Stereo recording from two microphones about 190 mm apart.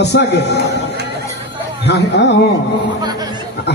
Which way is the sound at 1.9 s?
65° left (ahead or behind).